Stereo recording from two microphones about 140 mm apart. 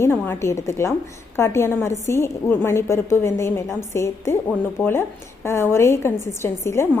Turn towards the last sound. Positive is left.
turn(degrees=20)  # may be behind; listen again after turning